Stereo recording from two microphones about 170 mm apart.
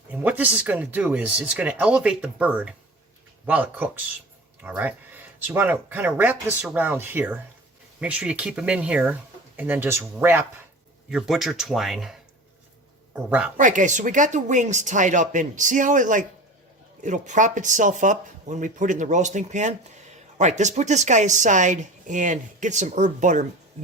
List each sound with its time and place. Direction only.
0.1 s speech: 10° right (ahead or behind)
11.1 s speech: centre (ahead or behind)
13.6 s a woman's voice: 50° right (ahead or behind)